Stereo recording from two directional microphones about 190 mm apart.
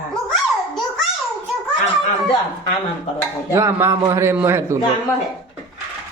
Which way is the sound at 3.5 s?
15° right (ahead or behind).